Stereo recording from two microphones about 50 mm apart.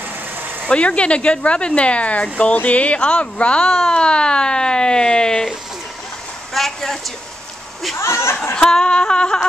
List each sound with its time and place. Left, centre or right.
0.7 s speech: left
6.5 s a woman's voice: centre
8.0 s speech: left
8.6 s speech: centre